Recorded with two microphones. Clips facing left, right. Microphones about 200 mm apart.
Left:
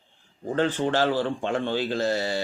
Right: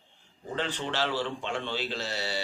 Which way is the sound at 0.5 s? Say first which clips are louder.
Left 8 dB; 50° left (ahead or behind).